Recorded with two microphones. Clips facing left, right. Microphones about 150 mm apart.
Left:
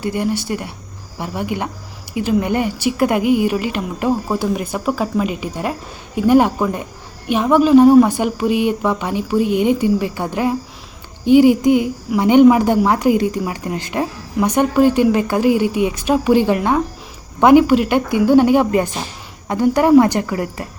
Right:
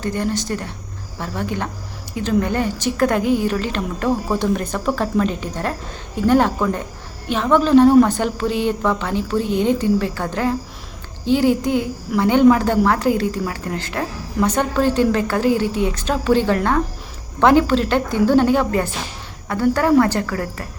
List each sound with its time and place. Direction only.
0.0 s a woman's voice: 15° left (ahead or behind)